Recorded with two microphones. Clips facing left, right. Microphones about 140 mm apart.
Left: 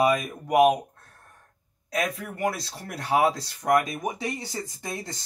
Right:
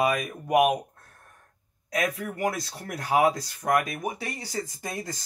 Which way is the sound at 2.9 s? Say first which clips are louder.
Even; 25° left (ahead or behind).